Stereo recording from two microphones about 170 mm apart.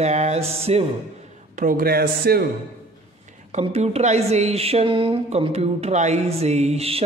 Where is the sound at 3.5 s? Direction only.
40° right (ahead or behind).